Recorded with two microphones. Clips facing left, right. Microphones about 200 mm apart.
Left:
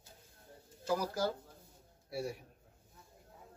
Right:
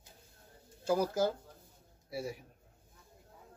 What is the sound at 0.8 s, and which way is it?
Speech, 25° right (ahead or behind).